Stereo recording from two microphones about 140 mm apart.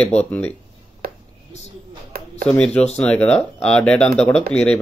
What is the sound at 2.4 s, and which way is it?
Speech, 5° left (ahead or behind).